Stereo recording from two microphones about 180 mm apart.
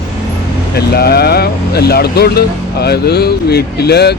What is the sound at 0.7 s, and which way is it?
Speech, 60° left (ahead or behind).